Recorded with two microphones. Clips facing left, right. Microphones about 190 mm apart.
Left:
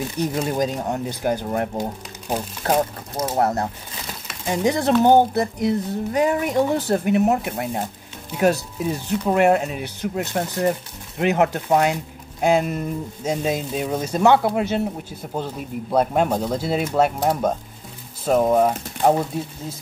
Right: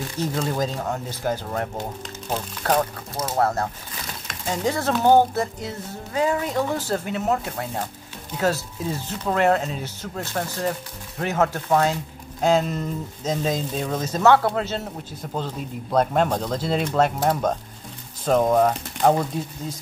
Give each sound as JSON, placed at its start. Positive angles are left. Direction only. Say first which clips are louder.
{"t": 0.2, "sound": "speech", "louder": "left 2 dB", "side_deg": 20}
{"t": 2.8, "sound": "speech", "louder": "left 3 dB", "side_deg": 20}